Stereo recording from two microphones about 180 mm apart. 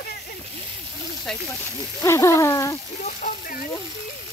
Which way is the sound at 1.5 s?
15° left (ahead or behind).